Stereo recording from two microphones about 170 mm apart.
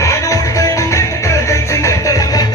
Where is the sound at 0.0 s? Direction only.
20° left (ahead or behind).